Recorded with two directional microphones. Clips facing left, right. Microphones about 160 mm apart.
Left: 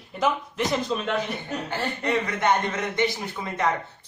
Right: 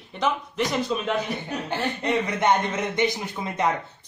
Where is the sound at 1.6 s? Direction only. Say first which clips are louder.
Right 2 dB; 20° right (ahead or behind).